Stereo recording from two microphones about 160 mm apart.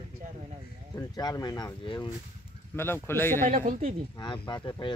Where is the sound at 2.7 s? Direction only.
15° left (ahead or behind).